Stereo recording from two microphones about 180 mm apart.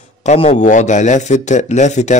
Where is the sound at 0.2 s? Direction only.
35° left (ahead or behind).